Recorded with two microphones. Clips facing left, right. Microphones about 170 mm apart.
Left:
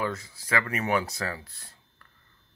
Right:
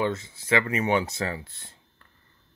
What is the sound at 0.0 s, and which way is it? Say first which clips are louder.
Speech: right 4 dB; 25° right (ahead or behind).